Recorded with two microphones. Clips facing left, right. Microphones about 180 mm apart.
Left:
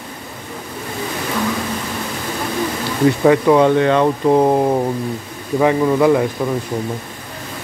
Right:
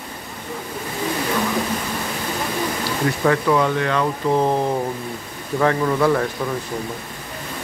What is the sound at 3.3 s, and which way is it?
A man's voice, 25° left (ahead or behind).